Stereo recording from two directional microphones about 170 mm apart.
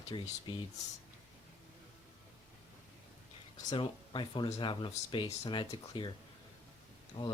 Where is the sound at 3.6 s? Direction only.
25° left (ahead or behind).